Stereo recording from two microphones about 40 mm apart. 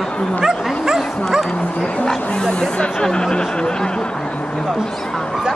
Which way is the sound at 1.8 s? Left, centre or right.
Centre.